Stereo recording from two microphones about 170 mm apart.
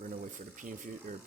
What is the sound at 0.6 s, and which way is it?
Speech, 50° right (ahead or behind).